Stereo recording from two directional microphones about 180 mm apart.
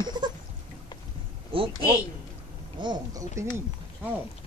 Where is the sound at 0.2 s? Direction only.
25° right (ahead or behind).